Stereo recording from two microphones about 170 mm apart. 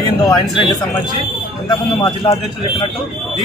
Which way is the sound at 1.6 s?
25° left (ahead or behind).